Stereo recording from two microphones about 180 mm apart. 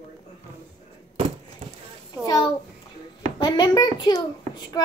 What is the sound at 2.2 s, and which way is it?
A child's voice, 20° left (ahead or behind).